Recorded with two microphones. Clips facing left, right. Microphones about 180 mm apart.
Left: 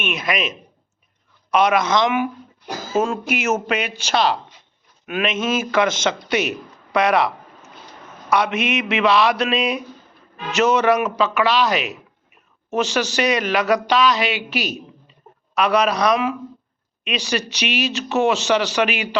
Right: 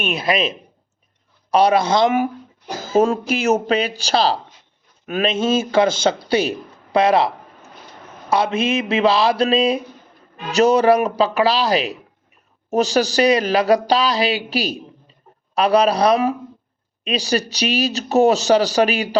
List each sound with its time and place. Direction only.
0.0 s speech: 30° right (ahead or behind)
8.3 s mantra: 30° right (ahead or behind)
10.5 s speech: 35° right (ahead or behind)